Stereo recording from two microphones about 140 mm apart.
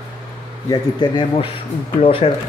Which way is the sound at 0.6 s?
30° left (ahead or behind).